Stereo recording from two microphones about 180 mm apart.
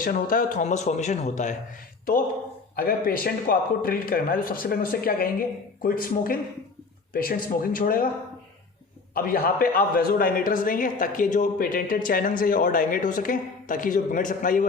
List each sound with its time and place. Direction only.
0.0 s speech: 50° left (ahead or behind)
2.7 s speech: 55° left (ahead or behind)
9.1 s speech: 55° left (ahead or behind)